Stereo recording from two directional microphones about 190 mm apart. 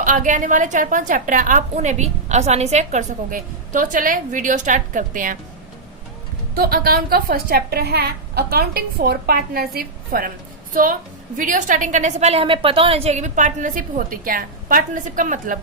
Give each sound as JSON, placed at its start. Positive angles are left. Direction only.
{"t": 0.0, "sound": "a woman's voice", "side_deg": -45}
{"t": 6.6, "sound": "a woman's voice", "side_deg": -50}
{"t": 11.3, "sound": "a woman's voice", "side_deg": -45}